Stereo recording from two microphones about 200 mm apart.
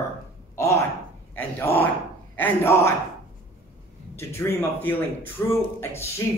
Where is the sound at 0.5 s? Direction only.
15° left (ahead or behind).